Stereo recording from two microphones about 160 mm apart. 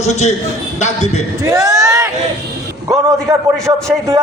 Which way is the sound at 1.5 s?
20° right (ahead or behind).